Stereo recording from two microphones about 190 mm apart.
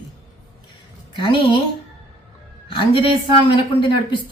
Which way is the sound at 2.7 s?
25° left (ahead or behind).